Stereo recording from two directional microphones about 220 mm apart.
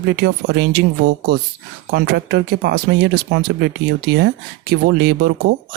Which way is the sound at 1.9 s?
45° right (ahead or behind).